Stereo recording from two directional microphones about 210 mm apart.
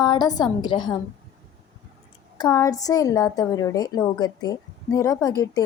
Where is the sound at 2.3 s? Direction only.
15° left (ahead or behind).